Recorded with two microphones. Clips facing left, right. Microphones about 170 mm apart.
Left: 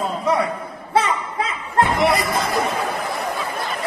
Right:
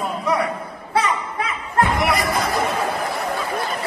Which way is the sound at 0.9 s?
25° left (ahead or behind).